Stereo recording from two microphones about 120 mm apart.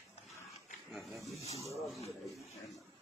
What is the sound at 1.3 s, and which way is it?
Speech, 60° left (ahead or behind).